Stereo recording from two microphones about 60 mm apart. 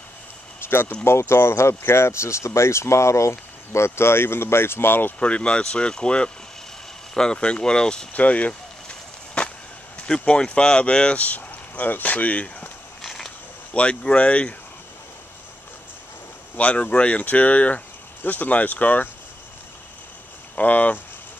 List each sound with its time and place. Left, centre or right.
0.6 s speech: left
5.2 s speech: centre
8.1 s a sound: left
10.0 s speech: centre
13.0 s a sound: centre
13.7 s speech: centre
16.5 s speech: left
20.5 s speech: left